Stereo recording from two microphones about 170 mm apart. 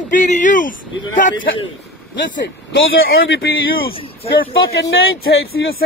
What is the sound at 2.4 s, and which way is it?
Speech, 90° left.